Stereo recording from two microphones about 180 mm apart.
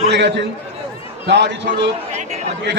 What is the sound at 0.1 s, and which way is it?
A man's voice, 70° right (ahead or behind).